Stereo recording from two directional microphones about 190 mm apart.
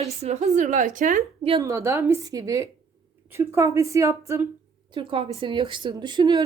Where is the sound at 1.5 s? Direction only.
20° right (ahead or behind).